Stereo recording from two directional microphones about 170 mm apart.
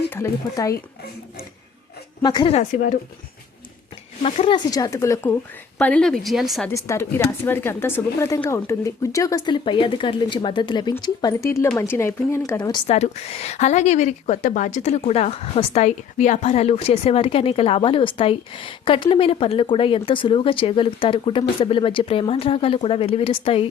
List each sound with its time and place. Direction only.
0.1 s speech: 20° left (ahead or behind)
2.2 s speech: 25° left (ahead or behind)
2.7 s speech: 50° left (ahead or behind)
4.2 s speech: 35° left (ahead or behind); by 5.4 s 15° left (ahead or behind)
5.8 s speech: 5° left (ahead or behind)
6.7 s a woman's voice: 15° left (ahead or behind)
12.9 s a woman's voice: 40° left (ahead or behind)